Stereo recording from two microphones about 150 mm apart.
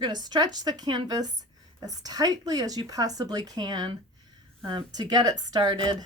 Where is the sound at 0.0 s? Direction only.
30° right (ahead or behind).